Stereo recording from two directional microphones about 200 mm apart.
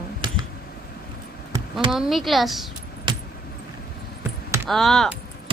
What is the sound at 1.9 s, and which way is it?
Speech, centre (ahead or behind).